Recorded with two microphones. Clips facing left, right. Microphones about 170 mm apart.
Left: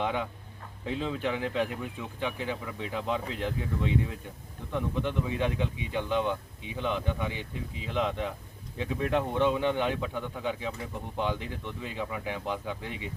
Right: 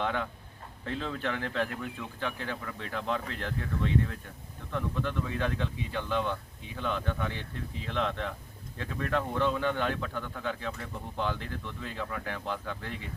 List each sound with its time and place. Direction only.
0.0 s speech: 10° left (ahead or behind)